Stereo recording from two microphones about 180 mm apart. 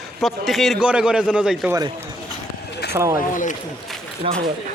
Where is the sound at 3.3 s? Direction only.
45° left (ahead or behind).